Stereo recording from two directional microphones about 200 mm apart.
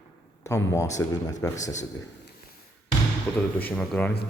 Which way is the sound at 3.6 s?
5° left (ahead or behind).